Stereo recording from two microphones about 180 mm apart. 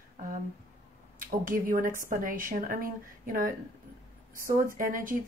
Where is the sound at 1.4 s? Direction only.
50° right (ahead or behind).